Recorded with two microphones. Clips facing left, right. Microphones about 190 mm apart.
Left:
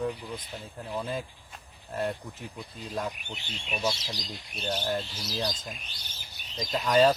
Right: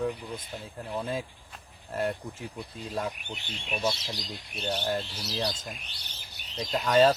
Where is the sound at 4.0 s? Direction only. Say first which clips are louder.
Right 1 dB; 65° right (ahead or behind).